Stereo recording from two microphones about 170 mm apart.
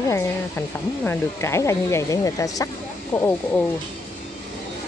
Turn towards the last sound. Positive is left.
turn(degrees=15)  # may be behind; listen again after turning